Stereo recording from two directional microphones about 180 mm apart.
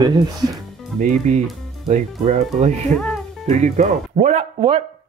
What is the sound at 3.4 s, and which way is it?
Speech, 40° right (ahead or behind).